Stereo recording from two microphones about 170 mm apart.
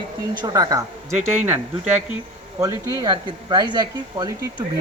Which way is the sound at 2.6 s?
20° right (ahead or behind).